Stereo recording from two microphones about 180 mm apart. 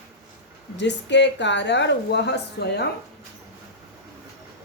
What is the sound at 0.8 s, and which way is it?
A woman's voice, 75° left (ahead or behind).